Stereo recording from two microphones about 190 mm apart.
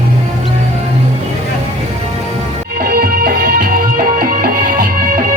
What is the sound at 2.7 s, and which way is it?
Music, 50° right (ahead or behind).